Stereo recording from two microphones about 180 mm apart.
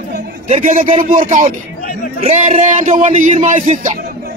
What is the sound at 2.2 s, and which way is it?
A man's voice, 35° right (ahead or behind).